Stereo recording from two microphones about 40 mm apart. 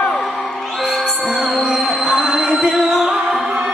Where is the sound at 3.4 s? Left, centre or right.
Right.